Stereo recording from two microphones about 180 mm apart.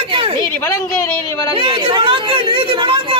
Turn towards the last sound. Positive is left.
turn(degrees=-30)  # may be behind; listen again after turning